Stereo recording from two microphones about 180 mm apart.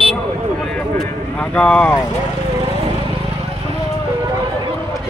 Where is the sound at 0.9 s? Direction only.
5° left (ahead or behind).